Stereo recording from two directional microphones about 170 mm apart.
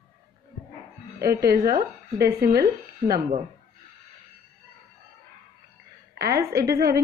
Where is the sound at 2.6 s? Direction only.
65° right (ahead or behind).